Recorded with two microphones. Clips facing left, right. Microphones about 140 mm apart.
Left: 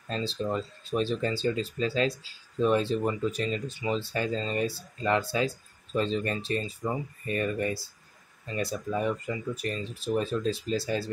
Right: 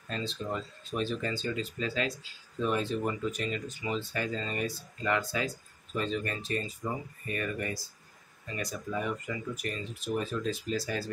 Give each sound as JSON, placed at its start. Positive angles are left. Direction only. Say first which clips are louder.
{"t": 0.1, "sound": "speech", "louder": "left 5 dB", "side_deg": 30}